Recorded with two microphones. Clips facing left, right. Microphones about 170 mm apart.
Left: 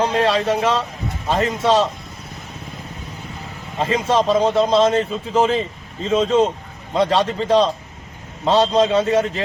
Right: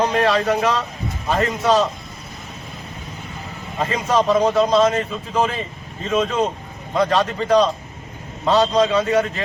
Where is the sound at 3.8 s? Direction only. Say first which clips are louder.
Left 1 dB; 25° left (ahead or behind).